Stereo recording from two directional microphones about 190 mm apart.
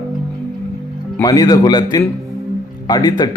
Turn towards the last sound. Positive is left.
turn(degrees=20)  # may be behind; listen again after turning